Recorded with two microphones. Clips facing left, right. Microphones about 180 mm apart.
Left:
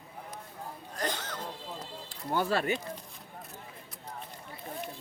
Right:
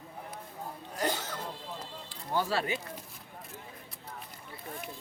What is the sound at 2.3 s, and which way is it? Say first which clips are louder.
Speech: left 2 dB; 50° left (ahead or behind).